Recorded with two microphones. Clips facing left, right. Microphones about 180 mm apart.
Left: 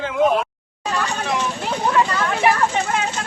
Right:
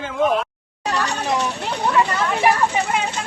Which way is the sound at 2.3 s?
10° right (ahead or behind).